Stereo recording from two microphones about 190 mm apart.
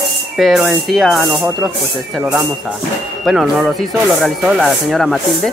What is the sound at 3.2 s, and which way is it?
Speech, 5° right (ahead or behind).